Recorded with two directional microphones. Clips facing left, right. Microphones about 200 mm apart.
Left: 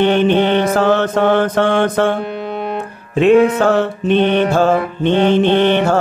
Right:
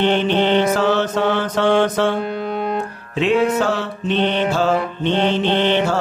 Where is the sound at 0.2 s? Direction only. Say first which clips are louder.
Left 3 dB; 50° left (ahead or behind).